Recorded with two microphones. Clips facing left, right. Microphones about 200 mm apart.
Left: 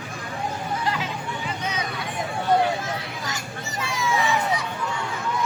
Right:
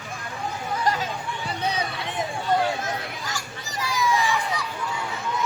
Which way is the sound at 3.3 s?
25° left (ahead or behind).